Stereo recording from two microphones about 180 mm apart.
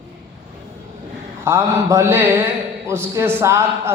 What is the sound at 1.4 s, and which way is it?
A man's voice, 15° right (ahead or behind).